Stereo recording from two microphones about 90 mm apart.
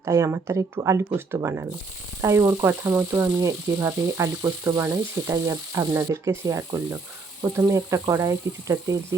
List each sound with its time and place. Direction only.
0.0 s frying: 40° right (ahead or behind)